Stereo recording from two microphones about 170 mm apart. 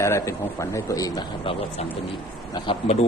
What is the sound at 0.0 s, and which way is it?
A man's voice, 15° left (ahead or behind).